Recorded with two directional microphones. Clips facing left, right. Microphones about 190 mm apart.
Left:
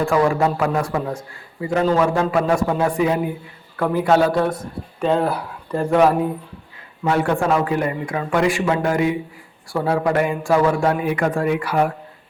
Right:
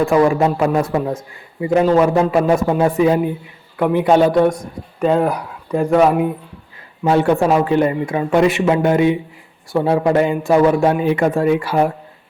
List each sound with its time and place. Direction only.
0.0 s a man's voice: 15° right (ahead or behind)
4.9 s speech: 5° right (ahead or behind)
7.0 s a man's voice: 25° right (ahead or behind)